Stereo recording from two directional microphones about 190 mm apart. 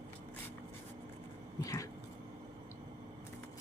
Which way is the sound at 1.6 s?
15° left (ahead or behind).